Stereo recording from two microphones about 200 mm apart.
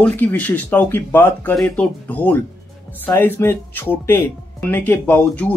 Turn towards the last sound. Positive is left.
turn(degrees=5)  # may be behind; listen again after turning